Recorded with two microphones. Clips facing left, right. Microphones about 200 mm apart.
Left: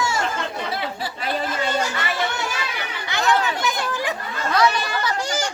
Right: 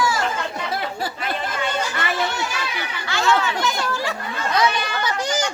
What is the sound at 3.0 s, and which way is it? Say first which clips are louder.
Chatter: even; 20° left (ahead or behind).